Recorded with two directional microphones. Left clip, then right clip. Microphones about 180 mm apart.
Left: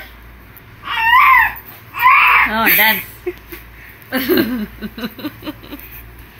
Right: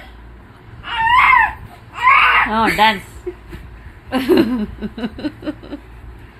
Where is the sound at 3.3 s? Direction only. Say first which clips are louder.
Left 3 dB; 5° left (ahead or behind).